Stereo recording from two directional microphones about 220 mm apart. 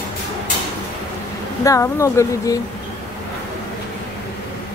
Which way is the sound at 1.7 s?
15° left (ahead or behind).